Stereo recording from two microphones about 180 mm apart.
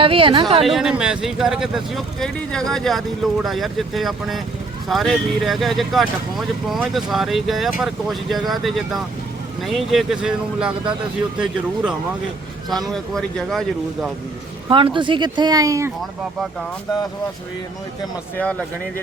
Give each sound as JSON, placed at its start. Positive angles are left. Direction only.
{"t": 0.0, "sound": "speech", "side_deg": -30}
{"t": 0.6, "sound": "speech", "side_deg": 0}
{"t": 14.7, "sound": "speech", "side_deg": -25}
{"t": 16.0, "sound": "speech", "side_deg": 0}